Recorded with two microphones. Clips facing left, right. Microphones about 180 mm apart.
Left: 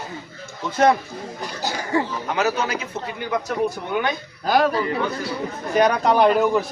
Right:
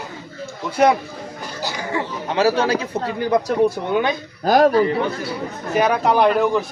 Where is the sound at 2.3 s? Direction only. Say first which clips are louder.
Right 6 dB; 30° right (ahead or behind).